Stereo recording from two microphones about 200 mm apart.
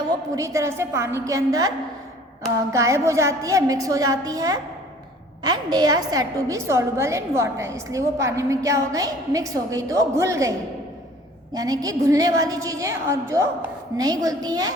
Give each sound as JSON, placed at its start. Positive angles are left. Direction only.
{"t": 0.3, "sound": "a woman's voice", "side_deg": -15}
{"t": 2.7, "sound": "a woman's voice", "side_deg": -15}
{"t": 11.5, "sound": "a woman's voice", "side_deg": -20}